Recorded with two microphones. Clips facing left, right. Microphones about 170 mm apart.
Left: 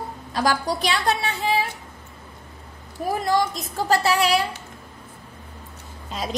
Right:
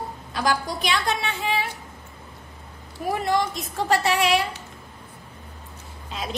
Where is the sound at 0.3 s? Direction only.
35° left (ahead or behind).